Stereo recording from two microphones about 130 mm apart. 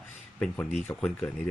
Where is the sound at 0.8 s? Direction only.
10° left (ahead or behind).